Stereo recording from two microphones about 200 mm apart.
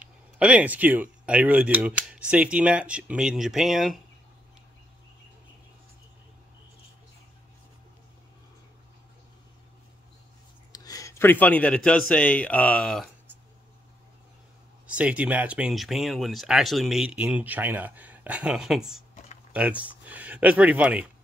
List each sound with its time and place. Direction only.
0.0 s speech: 5° right (ahead or behind)
10.7 s speech: 20° left (ahead or behind); by 13.1 s 5° left (ahead or behind)
14.9 s speech: 5° right (ahead or behind)